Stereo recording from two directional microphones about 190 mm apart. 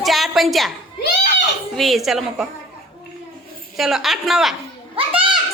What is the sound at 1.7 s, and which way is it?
Speech, centre (ahead or behind).